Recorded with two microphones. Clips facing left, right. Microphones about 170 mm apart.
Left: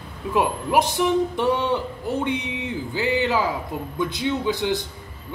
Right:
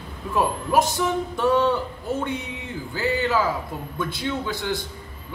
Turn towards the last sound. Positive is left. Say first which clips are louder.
# left 4 dB
turn(degrees=20)  # may be behind; listen again after turning